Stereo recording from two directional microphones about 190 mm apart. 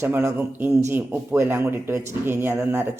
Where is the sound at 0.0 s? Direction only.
15° right (ahead or behind).